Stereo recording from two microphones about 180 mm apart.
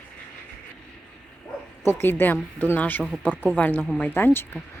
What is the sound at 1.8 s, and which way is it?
Speech, 10° left (ahead or behind).